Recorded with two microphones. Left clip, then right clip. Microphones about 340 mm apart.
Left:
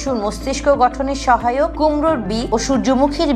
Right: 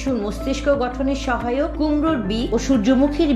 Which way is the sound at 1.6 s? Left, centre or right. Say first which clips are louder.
Left 5 dB; left.